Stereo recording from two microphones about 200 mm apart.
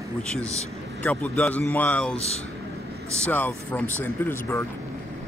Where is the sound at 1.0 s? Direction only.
5° left (ahead or behind).